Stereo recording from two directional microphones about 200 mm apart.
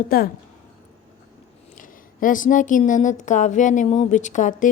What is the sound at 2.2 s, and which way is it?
Speech, 40° left (ahead or behind).